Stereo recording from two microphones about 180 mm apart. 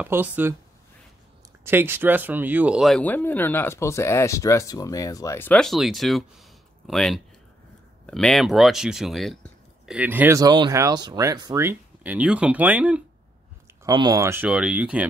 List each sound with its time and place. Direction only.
0.0 s speech: 10° right (ahead or behind)
1.6 s speech: 15° right (ahead or behind)
13.8 s speech: 20° right (ahead or behind)